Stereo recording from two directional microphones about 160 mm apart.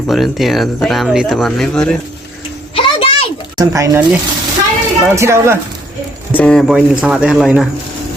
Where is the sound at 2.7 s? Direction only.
35° left (ahead or behind).